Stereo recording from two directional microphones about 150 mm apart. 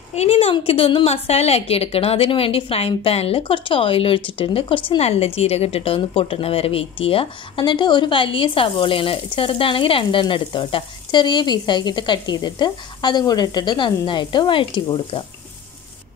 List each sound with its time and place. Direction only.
0.1 s a woman's voice: 45° left (ahead or behind)